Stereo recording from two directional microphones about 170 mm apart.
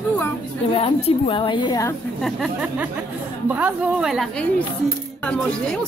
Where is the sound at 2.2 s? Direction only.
5° right (ahead or behind).